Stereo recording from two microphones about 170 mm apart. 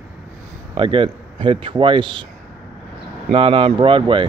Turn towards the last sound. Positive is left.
turn(degrees=-30)  # may be behind; listen again after turning